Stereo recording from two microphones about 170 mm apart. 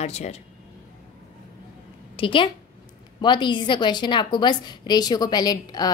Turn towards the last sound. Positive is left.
turn(degrees=25)  # may be behind; listen again after turning